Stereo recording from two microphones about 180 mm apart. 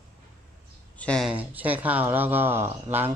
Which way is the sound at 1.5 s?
10° right (ahead or behind).